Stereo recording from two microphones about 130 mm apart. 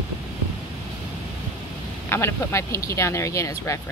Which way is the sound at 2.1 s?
20° left (ahead or behind).